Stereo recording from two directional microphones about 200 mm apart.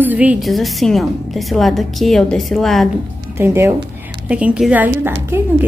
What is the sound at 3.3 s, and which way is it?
A woman's voice, 10° right (ahead or behind).